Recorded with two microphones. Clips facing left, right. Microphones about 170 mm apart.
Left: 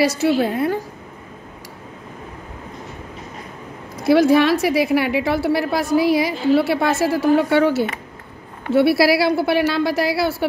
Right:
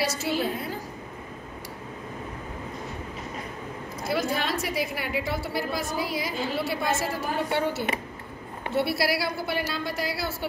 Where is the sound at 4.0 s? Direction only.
80° left.